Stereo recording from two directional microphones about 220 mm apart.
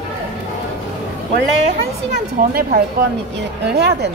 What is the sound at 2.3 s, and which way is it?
Speech, 40° right (ahead or behind).